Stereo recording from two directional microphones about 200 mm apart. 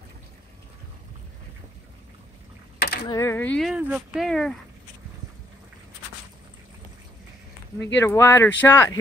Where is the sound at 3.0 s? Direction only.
15° left (ahead or behind).